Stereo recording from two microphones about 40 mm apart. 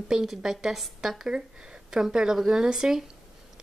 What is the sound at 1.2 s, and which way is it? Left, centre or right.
Speech, right.